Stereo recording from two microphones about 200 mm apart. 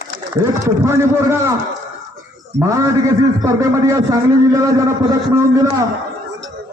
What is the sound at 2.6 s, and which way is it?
A man's voice, 15° right (ahead or behind).